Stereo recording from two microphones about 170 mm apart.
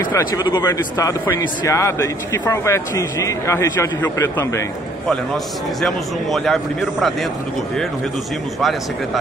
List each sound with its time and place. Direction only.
0.1 s a man's voice: 25° left (ahead or behind)
5.8 s a man's voice: centre (ahead or behind)
8.5 s a man's voice: centre (ahead or behind)